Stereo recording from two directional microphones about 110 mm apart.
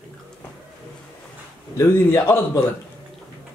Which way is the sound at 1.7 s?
20° left (ahead or behind).